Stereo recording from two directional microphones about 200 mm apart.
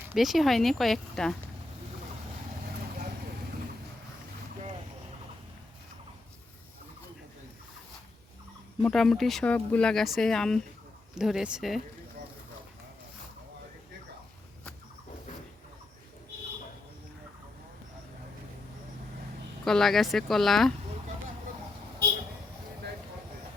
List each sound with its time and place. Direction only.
0.0 s speech: 5° right (ahead or behind)
8.8 s speech: 5° left (ahead or behind)
19.6 s speech: centre (ahead or behind)